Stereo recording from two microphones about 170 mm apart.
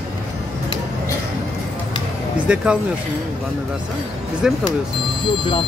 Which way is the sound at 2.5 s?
5° right (ahead or behind).